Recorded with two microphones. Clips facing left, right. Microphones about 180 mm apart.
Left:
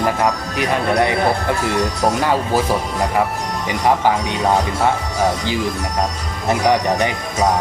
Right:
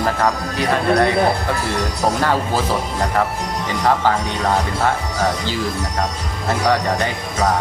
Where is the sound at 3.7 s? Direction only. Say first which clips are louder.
Left 1 dB; 15° left (ahead or behind).